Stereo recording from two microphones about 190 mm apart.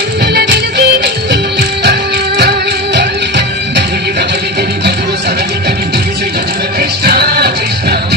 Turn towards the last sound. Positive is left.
turn(degrees=-60)  # may be behind; listen again after turning